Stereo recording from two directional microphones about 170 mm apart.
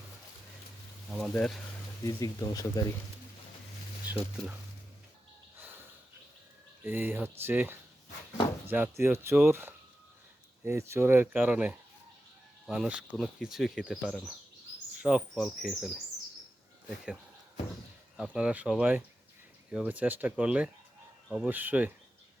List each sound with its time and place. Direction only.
1.1 s speech: 5° left (ahead or behind)
2.0 s speech: 20° left (ahead or behind)
4.1 s a sound: 10° right (ahead or behind)
5.5 s a sound: 10° right (ahead or behind)
6.8 s speech: 10° right (ahead or behind)
18.2 s speech: 5° right (ahead or behind)